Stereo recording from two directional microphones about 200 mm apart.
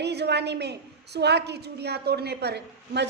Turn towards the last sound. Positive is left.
turn(degrees=-55)  # may be behind; listen again after turning